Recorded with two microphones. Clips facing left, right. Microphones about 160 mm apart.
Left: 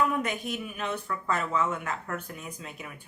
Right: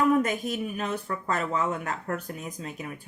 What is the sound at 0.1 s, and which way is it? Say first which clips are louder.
Speech: right 6 dB; 40° right (ahead or behind).